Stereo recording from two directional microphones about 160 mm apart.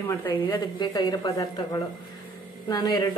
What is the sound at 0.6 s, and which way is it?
A woman's voice, 25° left (ahead or behind).